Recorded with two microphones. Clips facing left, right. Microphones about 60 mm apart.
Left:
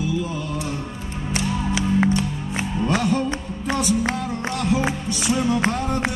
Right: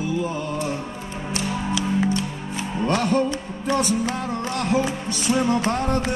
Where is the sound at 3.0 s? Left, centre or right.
Right.